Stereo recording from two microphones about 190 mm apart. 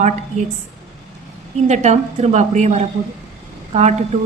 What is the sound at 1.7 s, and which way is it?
A woman's voice, 35° right (ahead or behind).